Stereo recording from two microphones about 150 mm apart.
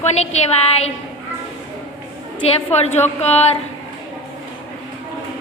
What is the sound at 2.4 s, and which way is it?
A woman's voice, 45° left (ahead or behind).